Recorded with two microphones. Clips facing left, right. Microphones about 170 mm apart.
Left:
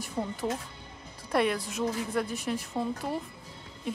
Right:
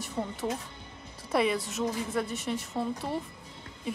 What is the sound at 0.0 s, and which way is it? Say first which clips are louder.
A woman's voice: left 1 dB; centre (ahead or behind).